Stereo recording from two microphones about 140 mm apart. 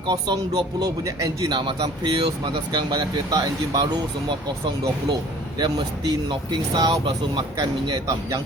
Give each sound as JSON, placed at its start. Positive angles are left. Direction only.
{"t": 0.0, "sound": "speech", "side_deg": -30}
{"t": 5.5, "sound": "speech", "side_deg": -30}